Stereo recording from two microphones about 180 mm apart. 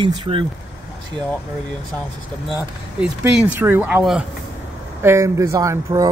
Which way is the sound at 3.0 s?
5° right (ahead or behind).